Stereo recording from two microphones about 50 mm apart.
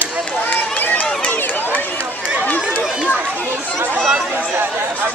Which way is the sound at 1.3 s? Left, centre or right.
Left.